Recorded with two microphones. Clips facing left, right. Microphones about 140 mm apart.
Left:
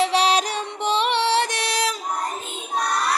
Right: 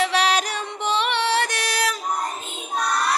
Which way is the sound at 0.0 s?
30° left (ahead or behind).